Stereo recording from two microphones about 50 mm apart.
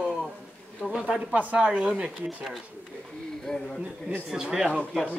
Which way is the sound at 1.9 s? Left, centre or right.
Centre.